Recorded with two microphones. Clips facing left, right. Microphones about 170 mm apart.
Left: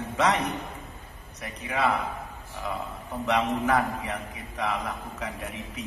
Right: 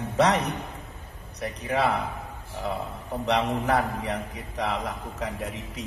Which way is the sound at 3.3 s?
35° right (ahead or behind).